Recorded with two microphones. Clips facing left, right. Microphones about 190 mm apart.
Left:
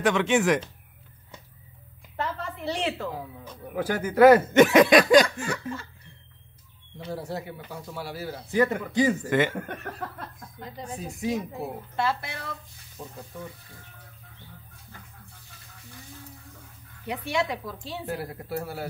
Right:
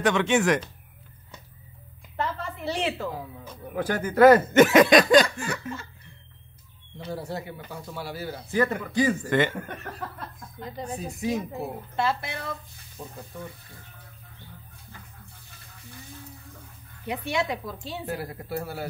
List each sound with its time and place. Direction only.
0.0 s speech: centre (ahead or behind)
2.1 s speech: centre (ahead or behind)
4.6 s speech: centre (ahead or behind)
7.1 s speech: centre (ahead or behind)
8.5 s speech: 15° left (ahead or behind)
9.5 s speech: 55° left (ahead or behind)
11.0 s speech: centre (ahead or behind)
11.9 s a woman's voice: 25° right (ahead or behind)
17.0 s a woman's voice: 20° right (ahead or behind)
18.0 s speech: centre (ahead or behind)